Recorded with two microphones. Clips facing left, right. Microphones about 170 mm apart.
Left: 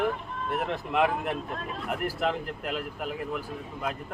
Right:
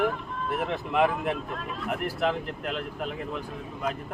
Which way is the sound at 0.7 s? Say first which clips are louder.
Right 1 dB; centre (ahead or behind).